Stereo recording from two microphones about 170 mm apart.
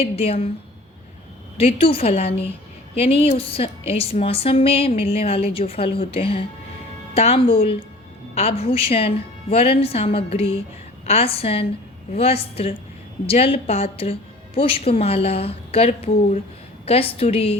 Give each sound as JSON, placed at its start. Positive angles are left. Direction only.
{"t": 0.0, "sound": "a woman's voice", "side_deg": 35}
{"t": 1.5, "sound": "a woman's voice", "side_deg": 35}